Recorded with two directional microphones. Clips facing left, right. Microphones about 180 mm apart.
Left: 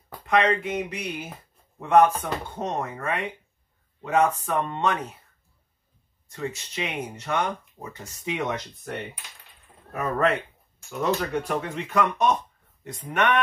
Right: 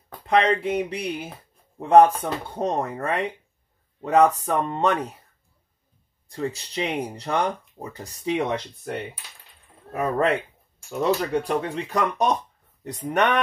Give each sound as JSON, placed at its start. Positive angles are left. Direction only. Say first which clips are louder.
{"t": 0.3, "sound": "speech", "louder": "right 2 dB", "side_deg": -30}
{"t": 6.2, "sound": "speech", "louder": "right 3 dB", "side_deg": -35}
{"t": 9.9, "sound": "speech", "louder": "right 2 dB", "side_deg": -30}